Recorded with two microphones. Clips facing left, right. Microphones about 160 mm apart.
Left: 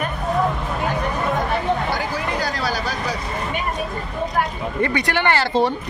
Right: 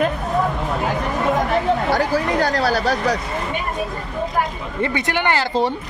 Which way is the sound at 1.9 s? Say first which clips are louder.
Right 6 dB; 65° right (ahead or behind).